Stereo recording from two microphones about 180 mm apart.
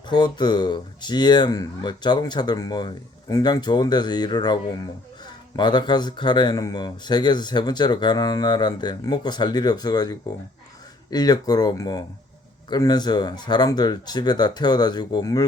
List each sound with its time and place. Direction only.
0.1 s speech: 25° left (ahead or behind)